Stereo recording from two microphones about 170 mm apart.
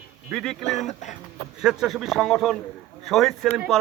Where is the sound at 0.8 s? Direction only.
45° left (ahead or behind).